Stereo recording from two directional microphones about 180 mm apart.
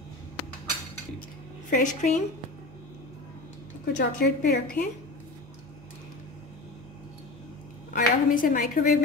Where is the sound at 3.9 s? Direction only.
60° left (ahead or behind).